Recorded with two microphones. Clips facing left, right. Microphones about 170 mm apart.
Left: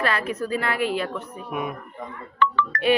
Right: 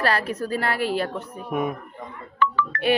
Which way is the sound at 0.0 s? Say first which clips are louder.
Right 1 dB; 40° right (ahead or behind).